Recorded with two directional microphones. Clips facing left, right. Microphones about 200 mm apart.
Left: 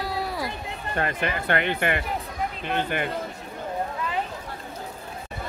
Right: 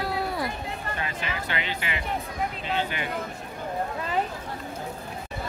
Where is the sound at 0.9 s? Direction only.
55° left (ahead or behind).